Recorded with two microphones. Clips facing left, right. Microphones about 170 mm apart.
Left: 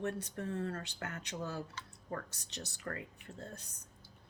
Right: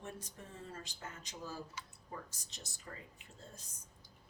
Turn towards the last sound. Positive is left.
turn(degrees=65)  # may be behind; listen again after turning